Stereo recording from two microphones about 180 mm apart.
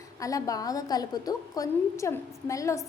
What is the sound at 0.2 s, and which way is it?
A woman's voice, 20° left (ahead or behind).